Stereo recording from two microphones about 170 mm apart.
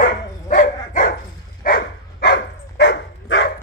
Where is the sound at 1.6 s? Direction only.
60° left (ahead or behind); by 3.4 s 90° left.